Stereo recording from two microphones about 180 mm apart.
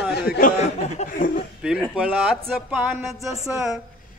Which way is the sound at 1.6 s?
5° right (ahead or behind).